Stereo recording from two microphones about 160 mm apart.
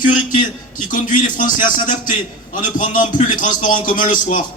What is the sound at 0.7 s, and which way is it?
Speech, 55° left (ahead or behind).